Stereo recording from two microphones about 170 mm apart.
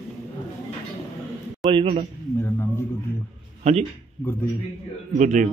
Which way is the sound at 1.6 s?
30° right (ahead or behind).